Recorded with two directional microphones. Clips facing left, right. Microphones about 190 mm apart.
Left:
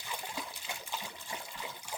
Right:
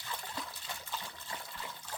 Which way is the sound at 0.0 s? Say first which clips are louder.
Left 1 dB; 10° left (ahead or behind).